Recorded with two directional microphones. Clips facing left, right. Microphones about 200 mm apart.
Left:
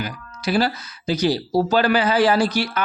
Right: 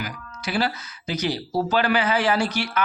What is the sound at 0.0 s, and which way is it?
Speech, 35° left (ahead or behind).